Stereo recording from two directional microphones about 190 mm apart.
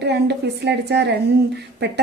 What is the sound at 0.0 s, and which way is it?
Speech, 60° right (ahead or behind).